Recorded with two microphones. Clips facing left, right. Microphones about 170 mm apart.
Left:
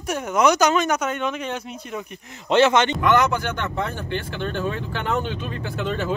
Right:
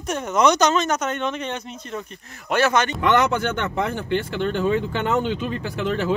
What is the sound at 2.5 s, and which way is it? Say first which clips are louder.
Speech: left 3 dB; 20° left (ahead or behind).